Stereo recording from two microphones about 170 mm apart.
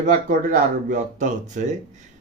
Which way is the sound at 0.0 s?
50° right (ahead or behind).